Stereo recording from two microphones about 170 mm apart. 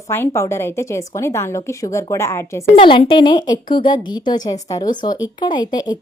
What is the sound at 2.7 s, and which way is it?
Speech, 30° left (ahead or behind).